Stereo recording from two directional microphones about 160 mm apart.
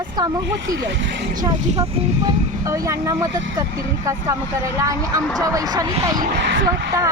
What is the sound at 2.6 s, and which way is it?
Speech, 20° right (ahead or behind).